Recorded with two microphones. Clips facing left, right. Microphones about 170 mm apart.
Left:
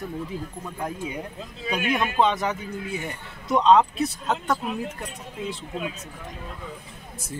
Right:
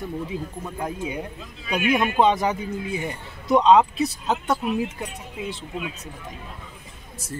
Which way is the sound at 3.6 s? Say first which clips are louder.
Even; 5° right (ahead or behind).